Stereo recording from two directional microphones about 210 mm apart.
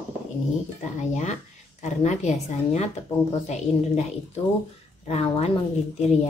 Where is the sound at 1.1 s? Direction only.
35° left (ahead or behind).